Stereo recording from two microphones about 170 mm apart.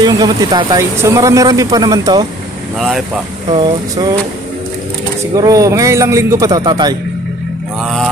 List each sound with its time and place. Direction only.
0.0 s speech: 20° right (ahead or behind)
5.3 s speech: 20° right (ahead or behind)